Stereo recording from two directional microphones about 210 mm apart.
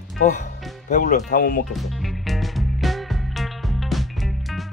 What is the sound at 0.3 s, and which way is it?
Speech, 35° left (ahead or behind).